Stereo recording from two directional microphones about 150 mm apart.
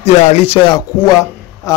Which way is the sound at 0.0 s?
45° left (ahead or behind).